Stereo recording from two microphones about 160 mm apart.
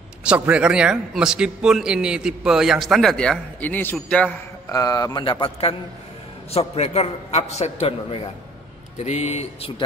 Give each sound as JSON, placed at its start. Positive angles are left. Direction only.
{"t": 0.2, "sound": "a man's voice", "side_deg": -5}
{"t": 4.6, "sound": "a man's voice", "side_deg": 20}